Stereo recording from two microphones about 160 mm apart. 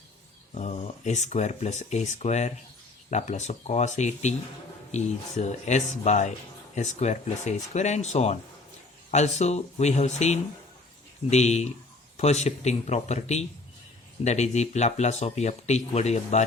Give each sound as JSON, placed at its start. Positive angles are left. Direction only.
{"t": 0.5, "sound": "speech", "side_deg": 45}